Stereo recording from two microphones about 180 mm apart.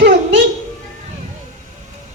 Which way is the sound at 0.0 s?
80° right.